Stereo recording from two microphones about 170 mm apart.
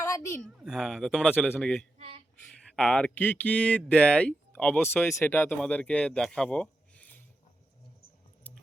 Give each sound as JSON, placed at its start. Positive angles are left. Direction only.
{"t": 0.4, "sound": "a man's voice", "side_deg": 0}
{"t": 2.0, "sound": "a sound", "side_deg": -35}
{"t": 2.7, "sound": "speech", "side_deg": 5}